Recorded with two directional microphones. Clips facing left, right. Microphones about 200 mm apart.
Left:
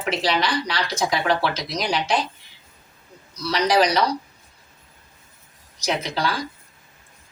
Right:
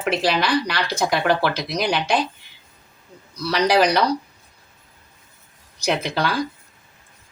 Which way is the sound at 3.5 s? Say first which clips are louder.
Right 2 dB; 60° right (ahead or behind).